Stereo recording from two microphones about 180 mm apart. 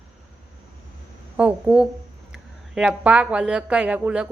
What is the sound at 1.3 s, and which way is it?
A woman's voice, 5° right (ahead or behind).